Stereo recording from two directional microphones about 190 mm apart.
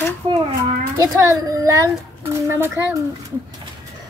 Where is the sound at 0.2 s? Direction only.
30° right (ahead or behind).